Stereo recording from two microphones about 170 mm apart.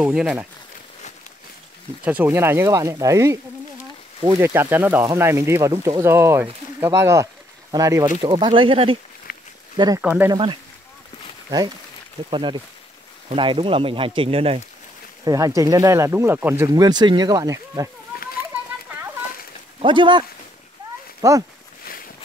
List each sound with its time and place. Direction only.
0.0 s speech: 5° right (ahead or behind)
2.0 s speech: 10° right (ahead or behind)
4.4 s speech: 15° right (ahead or behind); by 8.9 s 30° right (ahead or behind)
9.3 s a sound: 60° left (ahead or behind)
9.8 s speech: 20° right (ahead or behind)
10.3 s speech: 30° right (ahead or behind)
12.3 s speech: 30° right (ahead or behind)
15.2 s speech: 20° right (ahead or behind)
19.8 s speech: 30° right (ahead or behind)
21.8 s a sound: 55° left (ahead or behind)